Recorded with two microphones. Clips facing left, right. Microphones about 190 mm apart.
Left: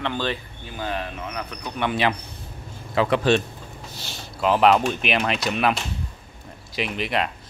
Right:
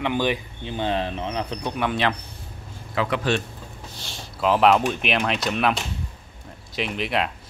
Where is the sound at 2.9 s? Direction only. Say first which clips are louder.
Left 4 dB; 30° left (ahead or behind).